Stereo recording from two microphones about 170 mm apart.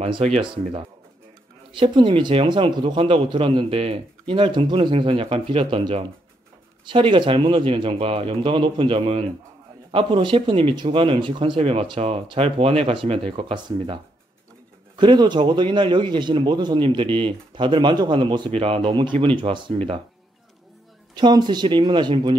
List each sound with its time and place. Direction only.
0.0 s speech: 35° right (ahead or behind)
15.0 s a man's voice: 25° right (ahead or behind)
21.1 s a man's voice: 25° right (ahead or behind)